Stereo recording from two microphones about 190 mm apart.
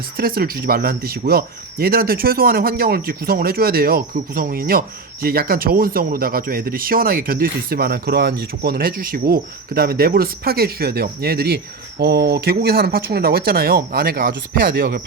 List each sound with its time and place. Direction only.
0.2 s speech: 50° right (ahead or behind)